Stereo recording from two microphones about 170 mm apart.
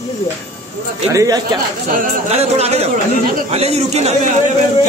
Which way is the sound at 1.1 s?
20° right (ahead or behind).